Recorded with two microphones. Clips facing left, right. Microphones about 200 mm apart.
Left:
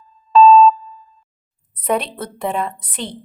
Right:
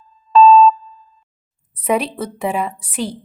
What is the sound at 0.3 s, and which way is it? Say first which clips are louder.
Music: even; centre (ahead or behind).